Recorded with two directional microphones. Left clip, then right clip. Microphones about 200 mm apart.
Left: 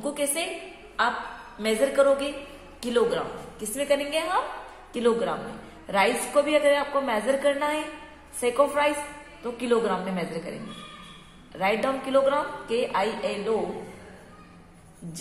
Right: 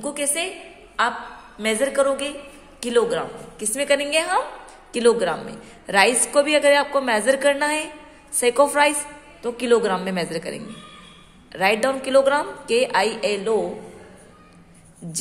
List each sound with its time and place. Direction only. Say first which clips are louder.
0.0 s a woman's voice: right 3 dB; 35° right (ahead or behind); by 10.4 s 55° right (ahead or behind)
11.5 s a woman's voice: right 5 dB; 50° right (ahead or behind)